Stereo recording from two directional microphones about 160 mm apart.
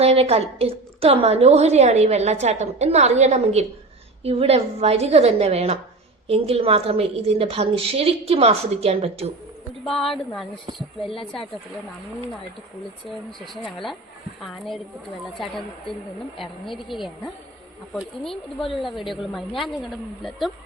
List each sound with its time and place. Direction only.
0.0 s a woman's voice: 40° right (ahead or behind)
9.8 s speech: centre (ahead or behind)
13.1 s speech: centre (ahead or behind)
15.4 s speech: centre (ahead or behind)